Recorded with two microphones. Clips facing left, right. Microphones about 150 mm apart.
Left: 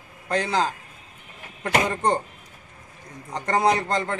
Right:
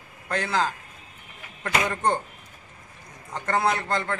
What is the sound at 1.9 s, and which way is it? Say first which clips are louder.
Speech: left 2 dB; 35° left (ahead or behind).